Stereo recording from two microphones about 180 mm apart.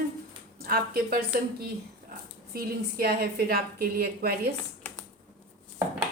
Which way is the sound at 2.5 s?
55° right (ahead or behind).